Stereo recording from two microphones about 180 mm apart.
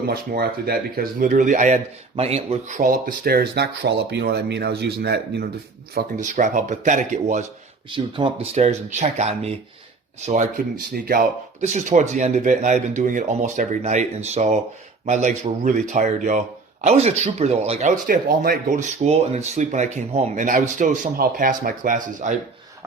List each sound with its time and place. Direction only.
0.1 s speech: 60° right (ahead or behind)
5.9 s speech: 45° right (ahead or behind)
7.9 s speech: 25° right (ahead or behind); by 22.4 s 45° right (ahead or behind)